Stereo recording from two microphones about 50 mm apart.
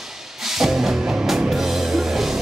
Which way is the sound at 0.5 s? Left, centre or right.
Centre.